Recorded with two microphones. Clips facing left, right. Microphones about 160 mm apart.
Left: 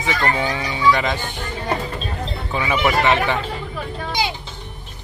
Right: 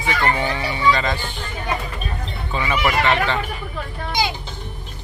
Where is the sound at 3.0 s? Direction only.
20° left (ahead or behind).